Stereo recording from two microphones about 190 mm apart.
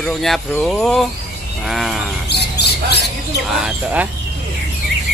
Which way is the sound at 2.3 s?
60° left (ahead or behind).